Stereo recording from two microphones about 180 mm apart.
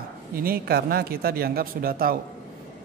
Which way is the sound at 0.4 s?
60° right (ahead or behind).